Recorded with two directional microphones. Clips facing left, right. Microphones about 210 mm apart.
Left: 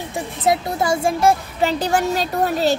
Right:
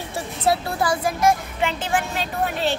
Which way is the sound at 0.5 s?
20° left (ahead or behind).